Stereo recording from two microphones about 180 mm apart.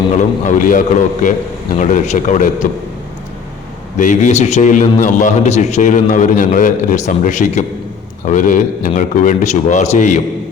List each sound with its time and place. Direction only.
0.2 s a man's voice: 45° left (ahead or behind)
1.8 s a man's voice: 40° left (ahead or behind)
3.9 s a man's voice: 45° left (ahead or behind)